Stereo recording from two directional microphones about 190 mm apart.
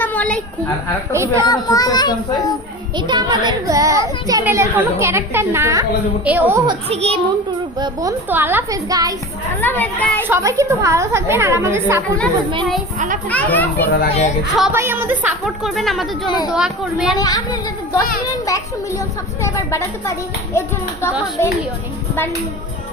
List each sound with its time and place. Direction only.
0.0 s a sound: 10° left (ahead or behind)
1.1 s a child's voice: 15° right (ahead or behind)
1.5 s speech: 20° left (ahead or behind)
3.1 s a child's voice: 20° right (ahead or behind)
6.7 s a child's voice: 30° right (ahead or behind)
8.3 s a child's voice: 10° right (ahead or behind)
9.6 s speech: 10° left (ahead or behind)
10.2 s a child's voice: 15° right (ahead or behind)
13.3 s speech: 10° left (ahead or behind)
14.7 s a woman's voice: 10° right (ahead or behind)
16.2 s speech: 25° left (ahead or behind)
16.5 s a woman's voice: 5° right (ahead or behind)
17.2 s speech: 20° left (ahead or behind)